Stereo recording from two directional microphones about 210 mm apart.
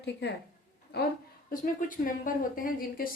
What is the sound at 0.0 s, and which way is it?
Speech, 55° left (ahead or behind).